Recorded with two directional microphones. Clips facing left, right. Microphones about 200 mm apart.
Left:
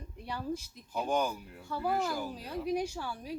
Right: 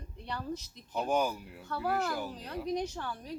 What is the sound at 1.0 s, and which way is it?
Speech, 5° right (ahead or behind).